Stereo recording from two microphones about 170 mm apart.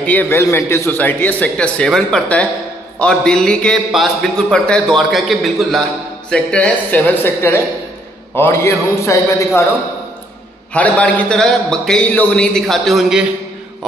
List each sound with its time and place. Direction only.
0.0 s a man's voice: 10° left (ahead or behind)
10.7 s a man's voice: 10° left (ahead or behind)